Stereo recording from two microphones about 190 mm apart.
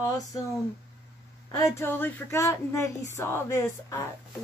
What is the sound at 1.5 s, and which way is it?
Speech, 15° left (ahead or behind).